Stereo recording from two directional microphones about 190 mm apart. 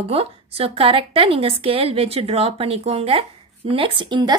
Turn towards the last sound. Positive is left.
turn(degrees=-25)  # may be behind; listen again after turning